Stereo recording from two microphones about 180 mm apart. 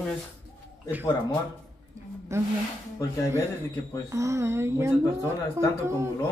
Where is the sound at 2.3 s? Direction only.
15° right (ahead or behind).